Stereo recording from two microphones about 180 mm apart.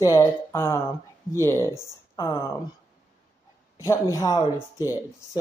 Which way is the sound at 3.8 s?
15° left (ahead or behind).